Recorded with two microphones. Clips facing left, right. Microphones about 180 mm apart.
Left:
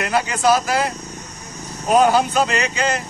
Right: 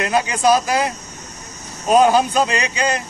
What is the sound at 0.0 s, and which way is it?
Speech, 15° right (ahead or behind).